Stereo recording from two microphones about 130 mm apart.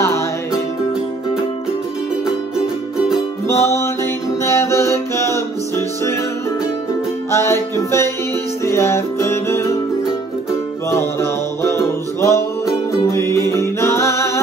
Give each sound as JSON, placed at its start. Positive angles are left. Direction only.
{"t": 3.4, "sound": "music", "side_deg": 20}
{"t": 7.2, "sound": "music", "side_deg": 20}
{"t": 10.9, "sound": "music", "side_deg": 20}